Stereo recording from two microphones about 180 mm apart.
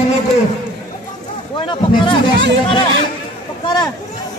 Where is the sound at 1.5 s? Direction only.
25° left (ahead or behind).